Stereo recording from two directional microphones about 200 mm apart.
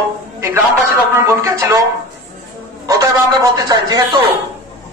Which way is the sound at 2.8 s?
15° right (ahead or behind).